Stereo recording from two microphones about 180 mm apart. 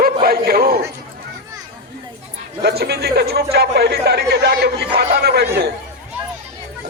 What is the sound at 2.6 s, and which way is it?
Speech, 65° right (ahead or behind).